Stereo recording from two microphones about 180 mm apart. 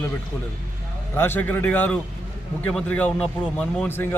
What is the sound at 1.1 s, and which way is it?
A man's voice, 10° left (ahead or behind).